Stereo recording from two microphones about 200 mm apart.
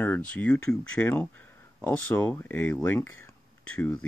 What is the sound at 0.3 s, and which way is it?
Speech, 5° left (ahead or behind).